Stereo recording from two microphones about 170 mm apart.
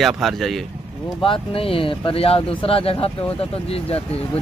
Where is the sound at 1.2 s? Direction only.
30° left (ahead or behind).